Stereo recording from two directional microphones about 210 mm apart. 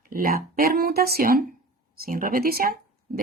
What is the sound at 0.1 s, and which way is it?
Speech, 40° right (ahead or behind).